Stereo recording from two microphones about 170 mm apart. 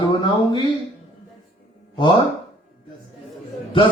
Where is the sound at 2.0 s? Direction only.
30° left (ahead or behind).